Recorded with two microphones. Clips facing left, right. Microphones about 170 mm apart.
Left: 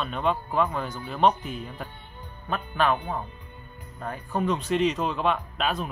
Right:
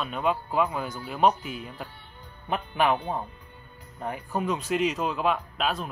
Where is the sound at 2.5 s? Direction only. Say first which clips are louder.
Even; 15° right (ahead or behind).